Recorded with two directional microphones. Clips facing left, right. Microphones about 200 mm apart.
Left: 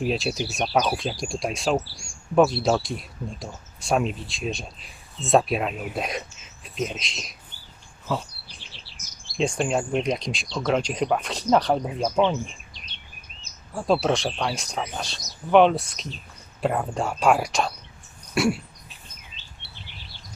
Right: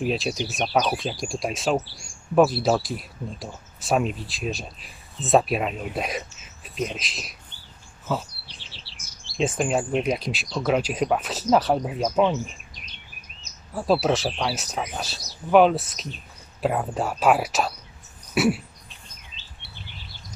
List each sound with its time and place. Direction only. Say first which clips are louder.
0.0 s speech: even; centre (ahead or behind)
8.7 s bird: even; 30° right (ahead or behind)
9.4 s speech: even; centre (ahead or behind)
13.7 s speech: right 1 dB; 5° right (ahead or behind)
18.3 s a sound: right 1 dB; 5° right (ahead or behind)